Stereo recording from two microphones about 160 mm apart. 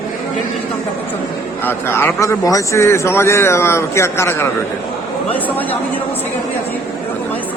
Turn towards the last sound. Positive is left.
turn(degrees=10)  # may be behind; listen again after turning